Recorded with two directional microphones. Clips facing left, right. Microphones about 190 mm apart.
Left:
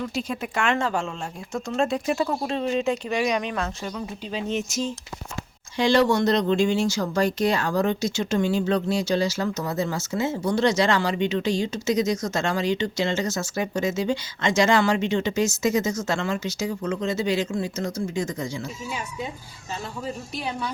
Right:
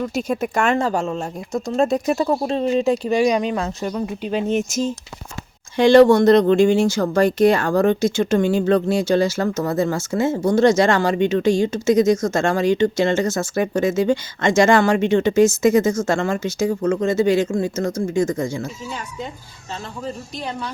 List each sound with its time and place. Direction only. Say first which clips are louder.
0.1 s speech: right 7 dB; 45° right (ahead or behind)
4.0 s speech: right 8 dB; 55° right (ahead or behind)
18.9 s speech: right 2 dB; 10° left (ahead or behind)